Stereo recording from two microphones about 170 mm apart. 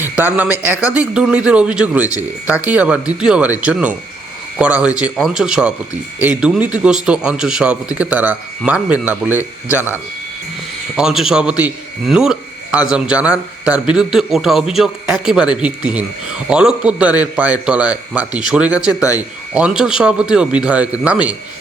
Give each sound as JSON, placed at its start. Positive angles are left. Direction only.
{"t": 0.0, "sound": "a sound", "side_deg": -10}
{"t": 0.6, "sound": "speech", "side_deg": -10}
{"t": 10.9, "sound": "speech", "side_deg": -5}